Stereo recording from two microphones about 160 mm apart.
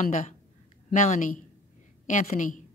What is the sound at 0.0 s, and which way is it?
A woman's voice, 50° left (ahead or behind).